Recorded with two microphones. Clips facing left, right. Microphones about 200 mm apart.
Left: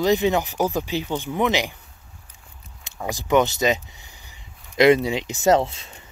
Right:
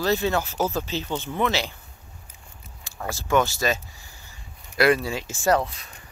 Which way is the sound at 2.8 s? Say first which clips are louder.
Left 3 dB; 15° left (ahead or behind).